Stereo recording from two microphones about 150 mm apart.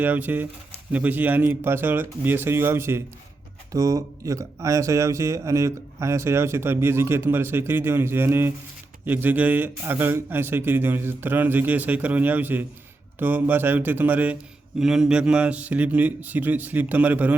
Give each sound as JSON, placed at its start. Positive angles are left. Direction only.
{"t": 0.0, "sound": "speech", "side_deg": -10}